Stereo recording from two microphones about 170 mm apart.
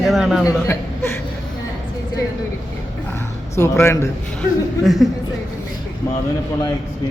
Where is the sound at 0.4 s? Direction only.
15° left (ahead or behind).